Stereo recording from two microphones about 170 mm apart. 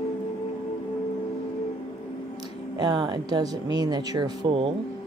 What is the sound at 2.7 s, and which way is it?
Speech, 25° right (ahead or behind).